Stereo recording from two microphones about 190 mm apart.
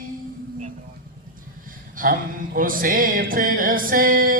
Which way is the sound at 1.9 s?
45° right (ahead or behind).